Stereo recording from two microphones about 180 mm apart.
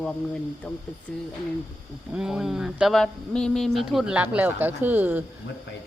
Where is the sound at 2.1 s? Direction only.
5° right (ahead or behind).